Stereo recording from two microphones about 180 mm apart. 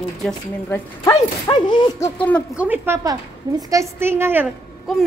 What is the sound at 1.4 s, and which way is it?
Speech, 25° left (ahead or behind).